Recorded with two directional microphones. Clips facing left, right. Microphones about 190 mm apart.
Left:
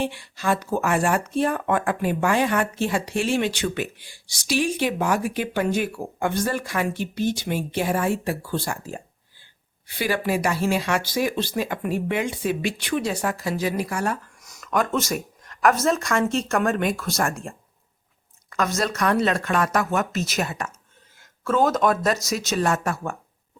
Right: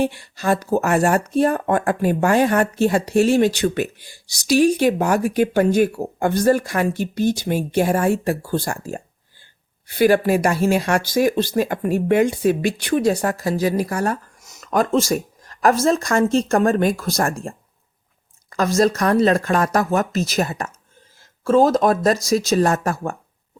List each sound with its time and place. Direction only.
0.0 s speech: 40° right (ahead or behind)
14.4 s a sound: 25° right (ahead or behind)
14.7 s speech: 30° right (ahead or behind)
18.5 s speech: 35° right (ahead or behind)